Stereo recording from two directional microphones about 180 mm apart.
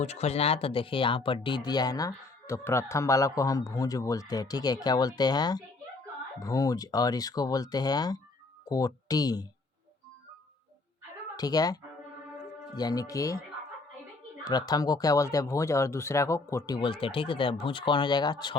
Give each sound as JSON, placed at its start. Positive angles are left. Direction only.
{"t": 0.0, "sound": "speech", "side_deg": 35}
{"t": 11.3, "sound": "speech", "side_deg": 20}
{"t": 14.4, "sound": "speech", "side_deg": 20}